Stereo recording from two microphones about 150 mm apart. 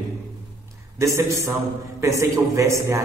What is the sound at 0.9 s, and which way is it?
A man's voice, 20° right (ahead or behind).